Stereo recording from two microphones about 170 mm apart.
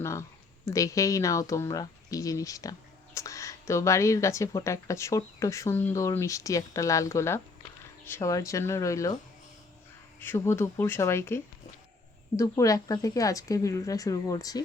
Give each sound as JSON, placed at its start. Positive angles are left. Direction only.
{"t": 0.0, "sound": "speech", "side_deg": 15}
{"t": 10.2, "sound": "speech", "side_deg": 15}
{"t": 12.4, "sound": "speech", "side_deg": 20}